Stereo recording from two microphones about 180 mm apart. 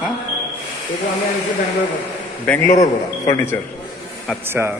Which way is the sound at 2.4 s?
10° left (ahead or behind).